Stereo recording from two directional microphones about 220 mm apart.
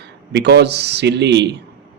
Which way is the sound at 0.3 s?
50° right (ahead or behind).